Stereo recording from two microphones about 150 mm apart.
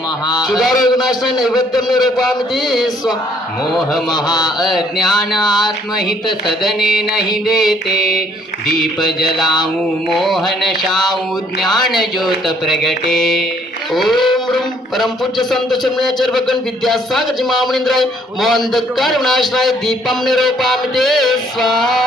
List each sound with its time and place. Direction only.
0.5 s speech: centre (ahead or behind)
3.7 s speech: centre (ahead or behind)
4.3 s mantra: 25° left (ahead or behind)
4.6 s speech: centre (ahead or behind)
6.6 s speech: centre (ahead or behind)